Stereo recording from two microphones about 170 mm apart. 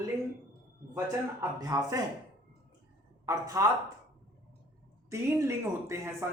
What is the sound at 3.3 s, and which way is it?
Speech, 20° right (ahead or behind).